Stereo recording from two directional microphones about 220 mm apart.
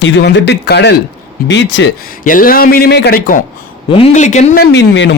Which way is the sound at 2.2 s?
40° left (ahead or behind).